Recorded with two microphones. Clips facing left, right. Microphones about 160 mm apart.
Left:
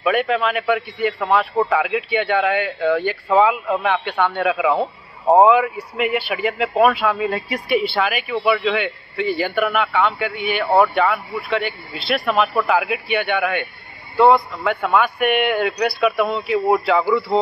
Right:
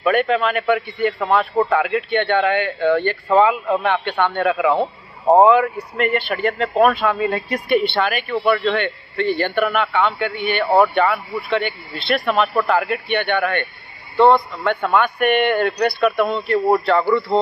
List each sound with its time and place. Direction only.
0.0 s a man's voice: centre (ahead or behind)